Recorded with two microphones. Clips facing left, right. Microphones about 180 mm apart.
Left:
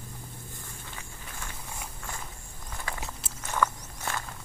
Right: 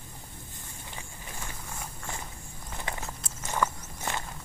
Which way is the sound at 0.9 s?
15° right (ahead or behind).